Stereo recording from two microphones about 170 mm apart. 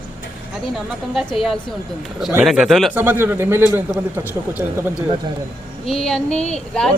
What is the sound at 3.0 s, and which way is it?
Speech, 10° right (ahead or behind).